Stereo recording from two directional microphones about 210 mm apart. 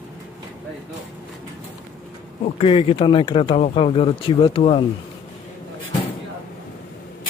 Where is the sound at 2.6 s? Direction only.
25° left (ahead or behind).